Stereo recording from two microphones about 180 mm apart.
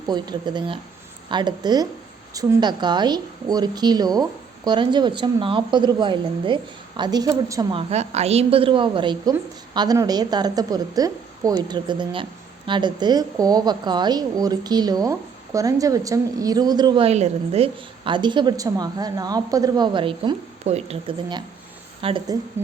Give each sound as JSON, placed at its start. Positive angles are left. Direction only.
{"t": 0.1, "sound": "a woman's voice", "side_deg": -25}